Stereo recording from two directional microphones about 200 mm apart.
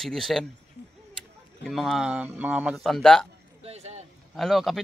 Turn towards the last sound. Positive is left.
turn(degrees=0)  # may be behind; listen again after turning